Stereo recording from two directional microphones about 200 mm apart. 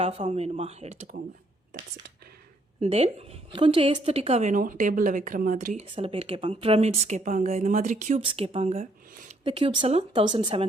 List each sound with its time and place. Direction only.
0.0 s a woman's voice: 30° right (ahead or behind)
2.8 s a woman's voice: 30° right (ahead or behind)
8.2 s speech: 25° right (ahead or behind)